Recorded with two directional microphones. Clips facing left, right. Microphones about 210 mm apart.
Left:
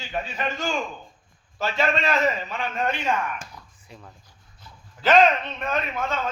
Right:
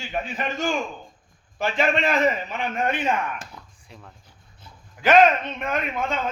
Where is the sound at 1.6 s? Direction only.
15° right (ahead or behind).